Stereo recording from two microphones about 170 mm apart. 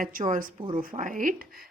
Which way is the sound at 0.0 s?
55° right (ahead or behind).